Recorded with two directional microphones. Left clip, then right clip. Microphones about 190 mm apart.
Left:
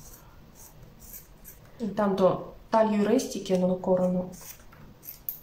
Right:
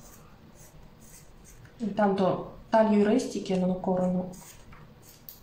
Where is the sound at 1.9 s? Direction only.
20° left (ahead or behind).